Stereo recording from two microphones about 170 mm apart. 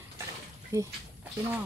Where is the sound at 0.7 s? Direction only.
15° right (ahead or behind).